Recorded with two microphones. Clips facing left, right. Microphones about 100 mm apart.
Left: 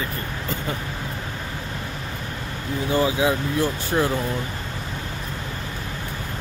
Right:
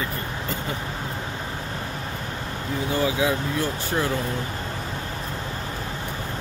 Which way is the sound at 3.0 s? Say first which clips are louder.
Left 2 dB; 25° left (ahead or behind).